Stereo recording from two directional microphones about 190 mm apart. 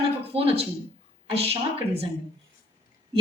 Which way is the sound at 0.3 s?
30° right (ahead or behind).